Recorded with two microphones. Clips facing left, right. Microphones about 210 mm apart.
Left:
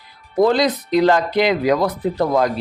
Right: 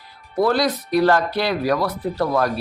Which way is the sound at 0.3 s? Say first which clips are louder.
Left 3 dB; 20° left (ahead or behind).